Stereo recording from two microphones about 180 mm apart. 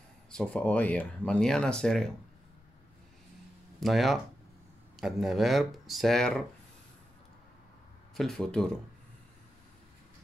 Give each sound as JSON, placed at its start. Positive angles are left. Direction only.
{"t": 0.3, "sound": "speech", "side_deg": 5}
{"t": 3.8, "sound": "speech", "side_deg": 0}
{"t": 8.2, "sound": "speech", "side_deg": 5}